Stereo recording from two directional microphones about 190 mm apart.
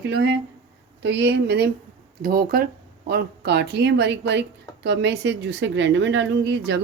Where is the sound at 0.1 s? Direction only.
65° right (ahead or behind).